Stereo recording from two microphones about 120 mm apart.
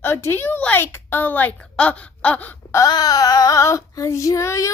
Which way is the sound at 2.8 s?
35° left (ahead or behind).